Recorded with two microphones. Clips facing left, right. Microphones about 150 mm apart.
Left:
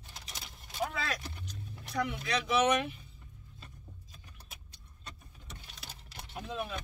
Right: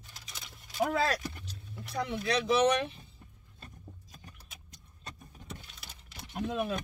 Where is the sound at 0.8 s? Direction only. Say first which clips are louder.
Right 7 dB; 45° right (ahead or behind).